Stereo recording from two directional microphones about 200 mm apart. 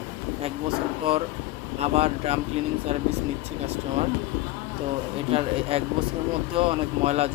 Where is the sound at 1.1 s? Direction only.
30° right (ahead or behind).